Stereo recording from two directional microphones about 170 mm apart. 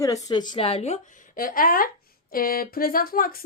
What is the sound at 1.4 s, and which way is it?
Speech, 55° left (ahead or behind).